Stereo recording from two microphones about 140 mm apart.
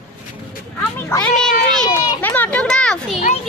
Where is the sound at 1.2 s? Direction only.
5° left (ahead or behind).